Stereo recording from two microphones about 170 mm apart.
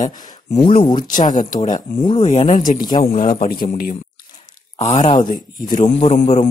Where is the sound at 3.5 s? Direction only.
60° left (ahead or behind).